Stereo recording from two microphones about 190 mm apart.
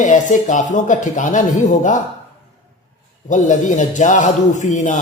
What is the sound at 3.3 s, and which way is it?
A man's voice, 40° left (ahead or behind).